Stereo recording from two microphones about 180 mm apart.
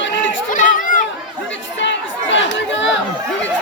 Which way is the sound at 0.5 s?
50° left (ahead or behind).